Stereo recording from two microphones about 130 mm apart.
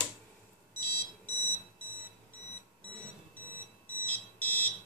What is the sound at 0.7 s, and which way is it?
Alarm clock, 15° left (ahead or behind).